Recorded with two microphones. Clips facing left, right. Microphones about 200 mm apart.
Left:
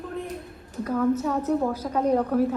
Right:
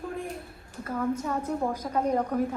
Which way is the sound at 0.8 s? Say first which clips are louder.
Left 6 dB; 10° right (ahead or behind).